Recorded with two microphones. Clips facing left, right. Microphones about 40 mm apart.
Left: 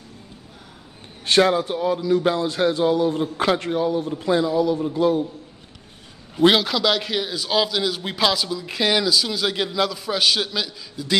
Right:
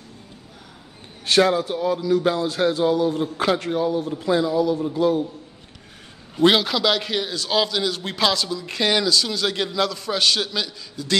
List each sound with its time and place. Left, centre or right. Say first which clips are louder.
1.2 s a man's voice: even; centre
6.3 s a man's voice: even; centre